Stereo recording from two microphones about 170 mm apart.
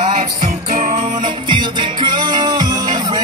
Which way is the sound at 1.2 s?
25° right (ahead or behind).